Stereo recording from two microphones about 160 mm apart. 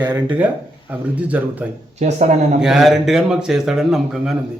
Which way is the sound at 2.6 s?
Centre (ahead or behind).